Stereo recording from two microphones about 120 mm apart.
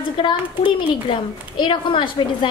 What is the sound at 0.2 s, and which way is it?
A woman's voice, 40° left (ahead or behind).